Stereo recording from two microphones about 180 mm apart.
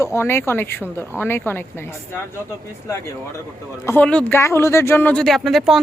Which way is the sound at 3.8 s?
10° left (ahead or behind).